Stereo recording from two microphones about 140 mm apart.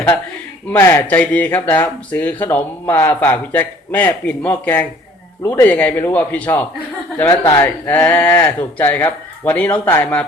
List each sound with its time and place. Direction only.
0.7 s speech: 20° left (ahead or behind)